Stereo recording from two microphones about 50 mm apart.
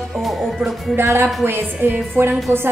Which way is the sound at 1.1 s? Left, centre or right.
Right.